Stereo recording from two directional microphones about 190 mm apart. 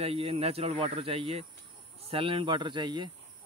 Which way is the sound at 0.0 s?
30° right (ahead or behind).